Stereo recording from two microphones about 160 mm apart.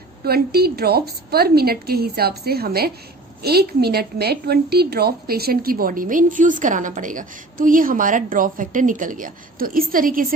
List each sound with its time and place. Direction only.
0.3 s a woman's voice: 75° right (ahead or behind)